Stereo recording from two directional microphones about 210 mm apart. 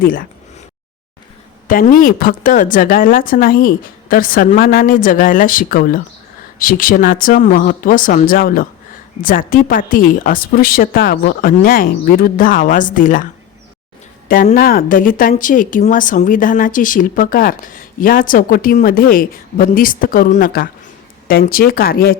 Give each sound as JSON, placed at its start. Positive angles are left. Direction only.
{"t": 0.0, "sound": "speech", "side_deg": 40}
{"t": 1.6, "sound": "speech", "side_deg": 40}
{"t": 14.3, "sound": "speech", "side_deg": 40}